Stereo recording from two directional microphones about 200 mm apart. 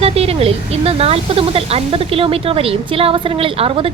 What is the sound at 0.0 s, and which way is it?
Speech, 30° right (ahead or behind).